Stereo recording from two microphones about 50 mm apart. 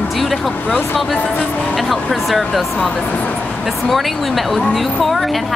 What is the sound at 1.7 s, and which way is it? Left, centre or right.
A woman's voice, centre.